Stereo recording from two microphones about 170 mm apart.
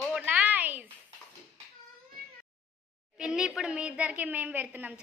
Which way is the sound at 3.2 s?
5° right (ahead or behind).